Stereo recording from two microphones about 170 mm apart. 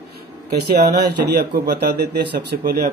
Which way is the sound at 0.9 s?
75° right (ahead or behind).